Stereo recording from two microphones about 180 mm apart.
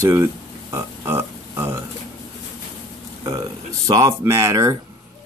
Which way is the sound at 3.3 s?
20° right (ahead or behind).